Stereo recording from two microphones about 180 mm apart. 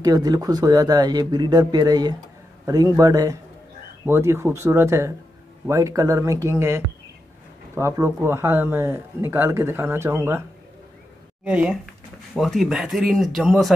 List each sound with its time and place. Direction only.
0.0 s speech: 20° right (ahead or behind)
11.4 s speech: 5° right (ahead or behind)